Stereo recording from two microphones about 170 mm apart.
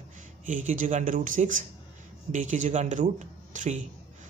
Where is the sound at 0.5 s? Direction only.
50° right (ahead or behind).